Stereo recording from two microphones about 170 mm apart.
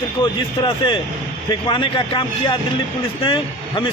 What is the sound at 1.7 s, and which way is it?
Speech, 30° left (ahead or behind).